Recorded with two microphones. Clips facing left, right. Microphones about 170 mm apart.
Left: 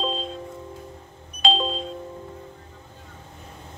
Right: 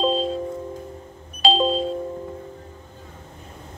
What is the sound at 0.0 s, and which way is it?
Music, 35° right (ahead or behind).